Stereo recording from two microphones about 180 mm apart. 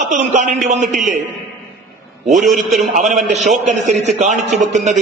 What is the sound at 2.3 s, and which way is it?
Speech, centre (ahead or behind).